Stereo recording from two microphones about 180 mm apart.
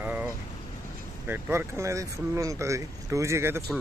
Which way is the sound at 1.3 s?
10° right (ahead or behind).